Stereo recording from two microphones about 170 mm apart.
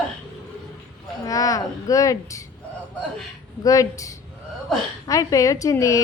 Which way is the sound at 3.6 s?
20° left (ahead or behind).